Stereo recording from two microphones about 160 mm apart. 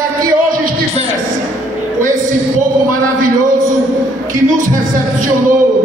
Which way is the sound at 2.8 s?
55° right (ahead or behind).